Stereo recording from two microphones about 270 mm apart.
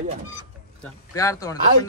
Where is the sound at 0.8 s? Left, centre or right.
Centre.